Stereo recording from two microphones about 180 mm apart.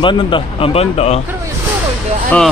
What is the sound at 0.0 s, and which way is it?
Speech, 30° left (ahead or behind).